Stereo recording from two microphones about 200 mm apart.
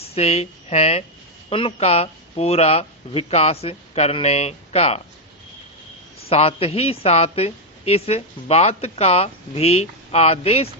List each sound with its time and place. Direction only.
0.1 s a woman's voice: 30° left (ahead or behind)
6.2 s a man's voice: 30° left (ahead or behind)